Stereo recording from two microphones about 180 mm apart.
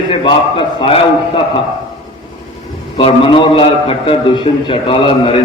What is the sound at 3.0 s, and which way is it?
A man's voice, 30° left (ahead or behind).